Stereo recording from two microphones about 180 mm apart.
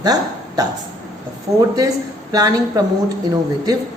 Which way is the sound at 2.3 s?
20° right (ahead or behind).